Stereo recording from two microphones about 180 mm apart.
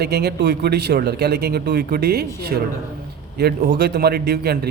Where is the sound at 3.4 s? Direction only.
60° right (ahead or behind).